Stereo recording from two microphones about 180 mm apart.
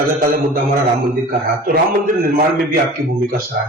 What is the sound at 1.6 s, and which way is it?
A man's voice, 55° right (ahead or behind).